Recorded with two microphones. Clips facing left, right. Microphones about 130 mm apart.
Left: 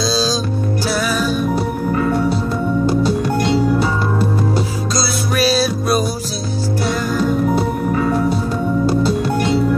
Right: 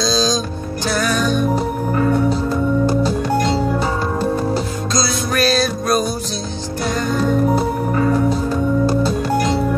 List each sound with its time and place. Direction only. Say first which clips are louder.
0.0 s music: even; 10° left (ahead or behind)
3.4 s music: left 2 dB; 35° right (ahead or behind)
4.9 s music: right 1 dB; 5° left (ahead or behind)